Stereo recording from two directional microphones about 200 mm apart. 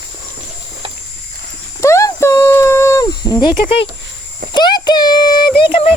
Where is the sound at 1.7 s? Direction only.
15° left (ahead or behind).